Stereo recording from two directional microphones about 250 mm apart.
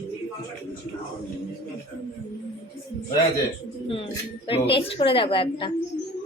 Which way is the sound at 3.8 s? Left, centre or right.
Left.